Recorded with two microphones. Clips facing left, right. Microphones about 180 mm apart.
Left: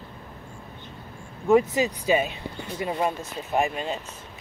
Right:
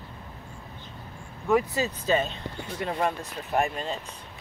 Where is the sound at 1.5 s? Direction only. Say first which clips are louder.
Left 5 dB; 20° left (ahead or behind).